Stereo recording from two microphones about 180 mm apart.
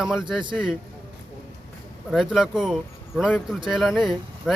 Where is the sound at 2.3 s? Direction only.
5° right (ahead or behind).